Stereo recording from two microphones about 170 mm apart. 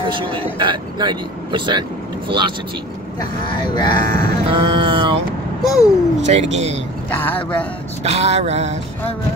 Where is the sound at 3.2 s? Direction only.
25° left (ahead or behind).